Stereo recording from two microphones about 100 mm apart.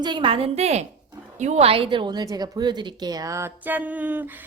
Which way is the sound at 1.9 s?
50° right (ahead or behind).